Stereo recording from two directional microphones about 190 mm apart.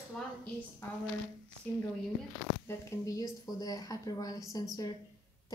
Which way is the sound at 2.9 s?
20° left (ahead or behind).